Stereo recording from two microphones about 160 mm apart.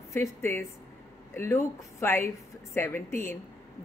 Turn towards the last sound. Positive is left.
turn(degrees=15)  # may be behind; listen again after turning